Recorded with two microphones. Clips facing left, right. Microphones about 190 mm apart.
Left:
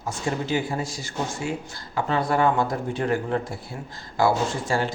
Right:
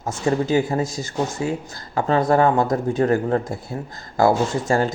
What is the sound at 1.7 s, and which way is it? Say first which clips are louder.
Speech: right 6 dB; 45° right (ahead or behind).